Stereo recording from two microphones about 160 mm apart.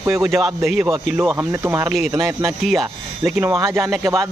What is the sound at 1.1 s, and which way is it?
Speech, 15° right (ahead or behind).